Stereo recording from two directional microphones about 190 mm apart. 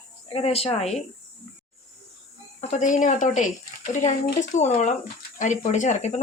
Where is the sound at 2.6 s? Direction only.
40° left (ahead or behind).